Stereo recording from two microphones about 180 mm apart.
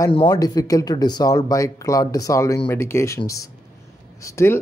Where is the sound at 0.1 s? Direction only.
25° left (ahead or behind).